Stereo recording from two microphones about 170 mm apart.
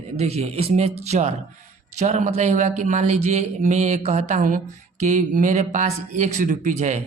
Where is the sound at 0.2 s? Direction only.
40° right (ahead or behind).